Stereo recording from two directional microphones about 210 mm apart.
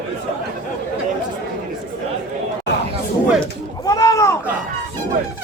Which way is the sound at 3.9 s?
15° left (ahead or behind).